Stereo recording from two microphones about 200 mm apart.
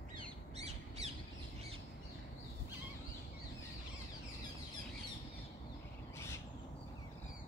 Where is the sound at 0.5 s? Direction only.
35° right (ahead or behind).